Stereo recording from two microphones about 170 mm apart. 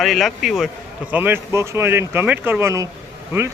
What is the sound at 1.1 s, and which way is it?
Speech, 10° right (ahead or behind).